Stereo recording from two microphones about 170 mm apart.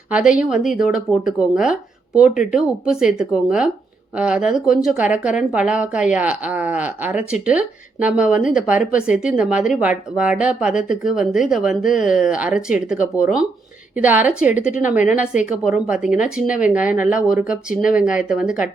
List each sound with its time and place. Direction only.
0.1 s speech: 5° right (ahead or behind)